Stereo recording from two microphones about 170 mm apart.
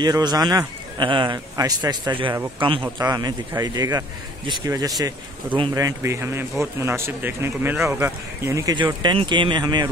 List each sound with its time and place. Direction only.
0.0 s speech: 25° right (ahead or behind)